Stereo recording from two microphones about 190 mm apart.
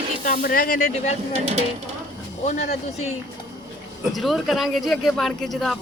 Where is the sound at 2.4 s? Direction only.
35° left (ahead or behind).